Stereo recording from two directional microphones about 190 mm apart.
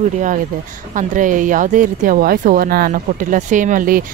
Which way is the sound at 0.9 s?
45° right (ahead or behind).